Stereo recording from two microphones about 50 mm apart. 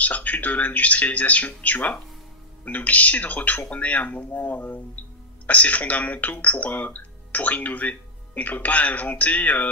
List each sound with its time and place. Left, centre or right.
0.0 s speech: left